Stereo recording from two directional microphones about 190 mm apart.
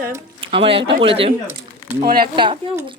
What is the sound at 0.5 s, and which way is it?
Speech, 30° right (ahead or behind).